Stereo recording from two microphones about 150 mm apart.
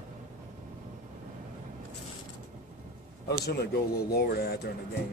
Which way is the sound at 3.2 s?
90° left.